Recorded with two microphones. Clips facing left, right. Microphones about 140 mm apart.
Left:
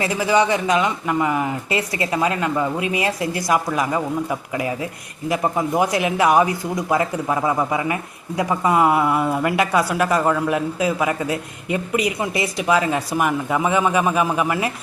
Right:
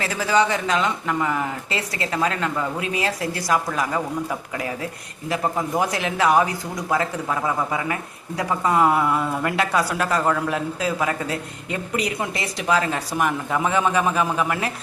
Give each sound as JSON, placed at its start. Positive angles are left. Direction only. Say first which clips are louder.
{"t": 0.0, "sound": "speech", "louder": "left 2 dB", "side_deg": 15}